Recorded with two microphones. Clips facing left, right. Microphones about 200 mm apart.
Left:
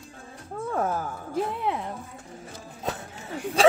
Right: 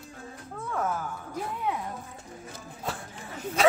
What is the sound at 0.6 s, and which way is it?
Speech, 40° left (ahead or behind).